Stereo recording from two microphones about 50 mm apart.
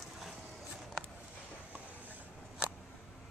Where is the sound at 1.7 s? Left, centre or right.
Right.